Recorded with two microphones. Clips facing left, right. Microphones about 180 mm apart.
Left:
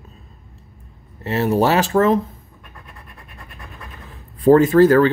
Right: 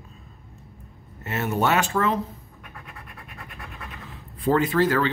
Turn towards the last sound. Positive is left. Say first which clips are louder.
# left 9 dB
turn(degrees=45)  # may be behind; listen again after turning